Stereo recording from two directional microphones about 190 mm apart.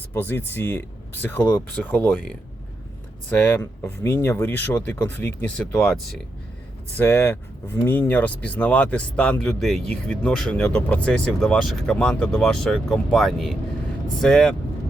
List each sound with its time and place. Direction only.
0.1 s speech: 10° left (ahead or behind)
3.2 s speech: 10° left (ahead or behind)